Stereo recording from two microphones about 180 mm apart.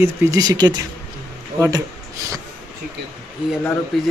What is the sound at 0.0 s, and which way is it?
Speech, 20° right (ahead or behind).